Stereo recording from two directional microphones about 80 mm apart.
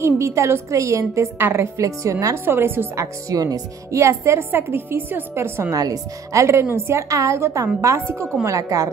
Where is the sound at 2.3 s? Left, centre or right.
Right.